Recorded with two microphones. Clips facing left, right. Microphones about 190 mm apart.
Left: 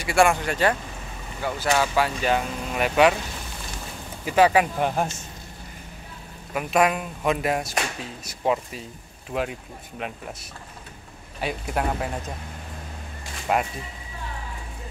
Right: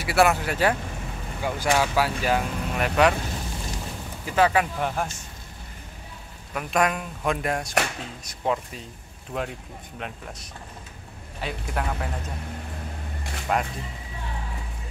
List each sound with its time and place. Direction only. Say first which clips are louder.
0.0 s speech: left 1 dB; 5° right (ahead or behind)
4.3 s speech: left 3 dB; 15° left (ahead or behind)
6.5 s speech: left 3 dB; 5° left (ahead or behind)
11.4 s speech: left 4 dB; 15° left (ahead or behind)
13.5 s speech: left 2 dB; 10° left (ahead or behind)